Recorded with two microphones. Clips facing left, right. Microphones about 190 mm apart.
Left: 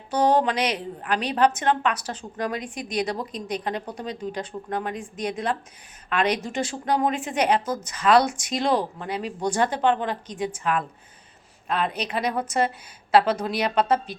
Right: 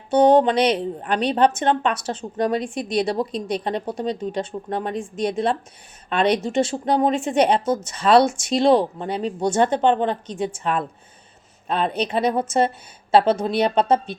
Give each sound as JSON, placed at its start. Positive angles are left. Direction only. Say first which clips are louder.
{"t": 0.1, "sound": "a woman's voice", "louder": "right 6 dB", "side_deg": -25}